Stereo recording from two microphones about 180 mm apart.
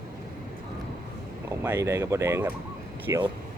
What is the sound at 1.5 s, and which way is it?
Speech, 15° right (ahead or behind).